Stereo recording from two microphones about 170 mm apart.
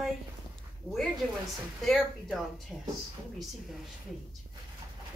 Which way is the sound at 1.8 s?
Centre (ahead or behind).